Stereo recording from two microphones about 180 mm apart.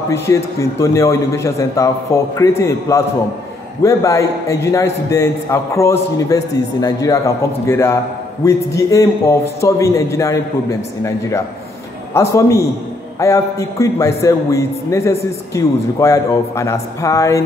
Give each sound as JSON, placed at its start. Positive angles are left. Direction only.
{"t": 0.1, "sound": "a man's voice", "side_deg": 15}